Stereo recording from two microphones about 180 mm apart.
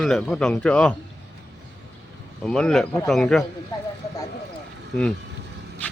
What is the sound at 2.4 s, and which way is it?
Speech, 5° left (ahead or behind).